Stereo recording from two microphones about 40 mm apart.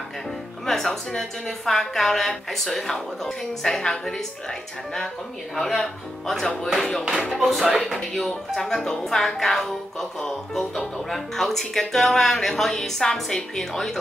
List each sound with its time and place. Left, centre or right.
0.7 s speech: centre
5.6 s speech: centre
6.4 s music: centre
6.7 s music: centre
7.2 s speech: centre